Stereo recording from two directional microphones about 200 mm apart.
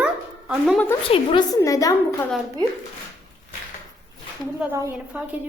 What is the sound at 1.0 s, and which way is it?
Speech, 25° left (ahead or behind).